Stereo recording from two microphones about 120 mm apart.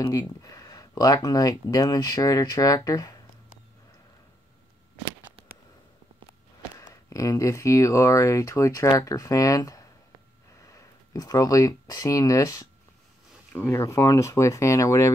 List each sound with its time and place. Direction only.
0.0 s speech: 30° left (ahead or behind)
6.9 s speech: 30° left (ahead or behind)